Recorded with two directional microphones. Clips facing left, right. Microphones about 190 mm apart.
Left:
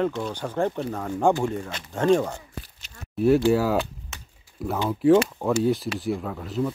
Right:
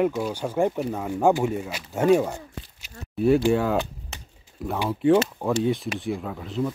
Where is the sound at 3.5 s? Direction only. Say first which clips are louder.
Left 1 dB; 5° left (ahead or behind).